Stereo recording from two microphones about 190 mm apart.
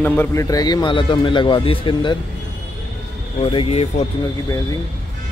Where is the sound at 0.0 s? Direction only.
10° left (ahead or behind); by 2.1 s 25° left (ahead or behind).